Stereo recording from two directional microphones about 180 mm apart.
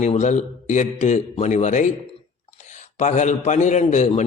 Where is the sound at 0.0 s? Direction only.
40° left (ahead or behind).